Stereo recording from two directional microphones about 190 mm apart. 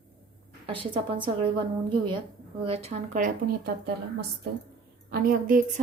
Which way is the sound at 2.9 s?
45° right (ahead or behind).